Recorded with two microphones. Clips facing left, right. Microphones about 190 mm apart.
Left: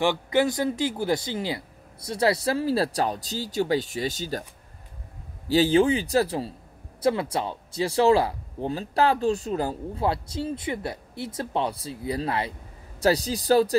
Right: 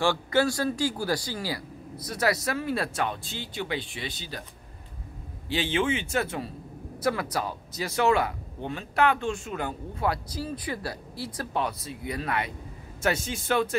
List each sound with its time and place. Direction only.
0.0 s speech: 20° left (ahead or behind); by 4.5 s 40° left (ahead or behind)
5.5 s speech: 40° left (ahead or behind)